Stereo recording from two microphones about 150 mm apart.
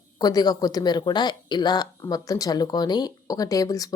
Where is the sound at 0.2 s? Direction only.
25° left (ahead or behind).